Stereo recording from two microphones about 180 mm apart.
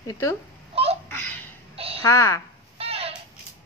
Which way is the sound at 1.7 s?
35° right (ahead or behind).